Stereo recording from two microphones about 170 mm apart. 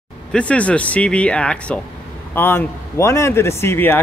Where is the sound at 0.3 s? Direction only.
5° left (ahead or behind).